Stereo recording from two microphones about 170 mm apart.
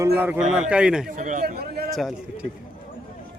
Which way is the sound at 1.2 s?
45° right (ahead or behind).